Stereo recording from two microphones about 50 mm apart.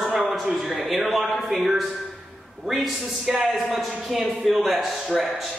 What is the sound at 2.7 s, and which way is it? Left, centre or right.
A man's voice, centre.